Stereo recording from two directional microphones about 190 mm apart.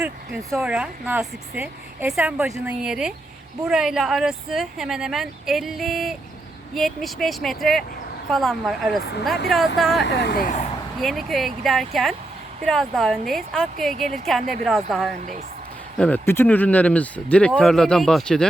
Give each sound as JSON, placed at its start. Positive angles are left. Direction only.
{"t": 0.5, "sound": "speech", "side_deg": -5}
{"t": 10.0, "sound": "speech", "side_deg": 65}
{"t": 11.0, "sound": "speech", "side_deg": 0}